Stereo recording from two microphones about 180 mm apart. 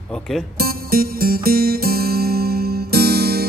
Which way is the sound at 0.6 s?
55° right (ahead or behind).